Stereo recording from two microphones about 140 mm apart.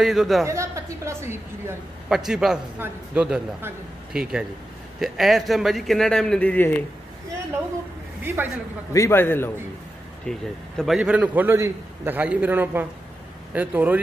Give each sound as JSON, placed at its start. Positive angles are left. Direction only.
{"t": 0.0, "sound": "a man's voice", "side_deg": 0}
{"t": 0.5, "sound": "a woman's voice", "side_deg": -20}
{"t": 2.0, "sound": "a man's voice", "side_deg": -5}
{"t": 8.3, "sound": "a man's voice", "side_deg": -15}
{"t": 8.9, "sound": "a man's voice", "side_deg": 20}
{"t": 10.3, "sound": "a man's voice", "side_deg": 5}